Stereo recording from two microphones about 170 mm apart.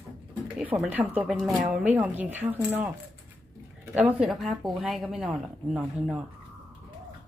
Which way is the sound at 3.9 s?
10° right (ahead or behind).